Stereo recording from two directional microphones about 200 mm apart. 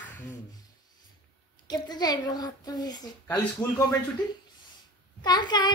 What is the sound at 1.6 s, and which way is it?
Child singing, 20° left (ahead or behind).